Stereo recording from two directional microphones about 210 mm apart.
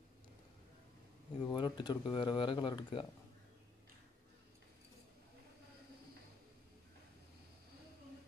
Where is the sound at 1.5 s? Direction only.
20° left (ahead or behind).